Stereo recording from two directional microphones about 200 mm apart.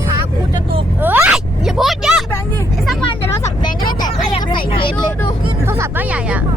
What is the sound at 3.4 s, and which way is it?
Vehicle, 20° left (ahead or behind).